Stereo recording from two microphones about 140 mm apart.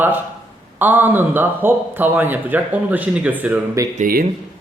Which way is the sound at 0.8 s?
15° right (ahead or behind).